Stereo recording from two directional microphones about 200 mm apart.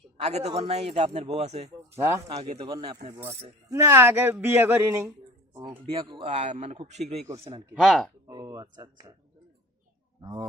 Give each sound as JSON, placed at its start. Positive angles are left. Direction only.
{"t": 0.2, "sound": "a man's voice", "side_deg": -35}
{"t": 2.0, "sound": "speech", "side_deg": -15}
{"t": 2.3, "sound": "speech", "side_deg": -30}
{"t": 5.8, "sound": "a man's voice", "side_deg": -25}
{"t": 7.7, "sound": "speech", "side_deg": 0}
{"t": 8.3, "sound": "speech", "side_deg": -20}